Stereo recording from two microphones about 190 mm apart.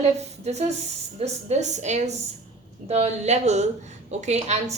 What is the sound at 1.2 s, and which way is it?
A woman's voice, 35° right (ahead or behind).